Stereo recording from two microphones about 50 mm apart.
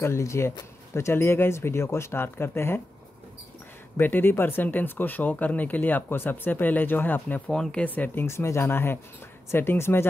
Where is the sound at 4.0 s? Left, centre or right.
Left.